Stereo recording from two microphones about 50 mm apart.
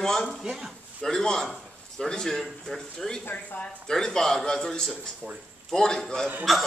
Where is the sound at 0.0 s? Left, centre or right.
Centre.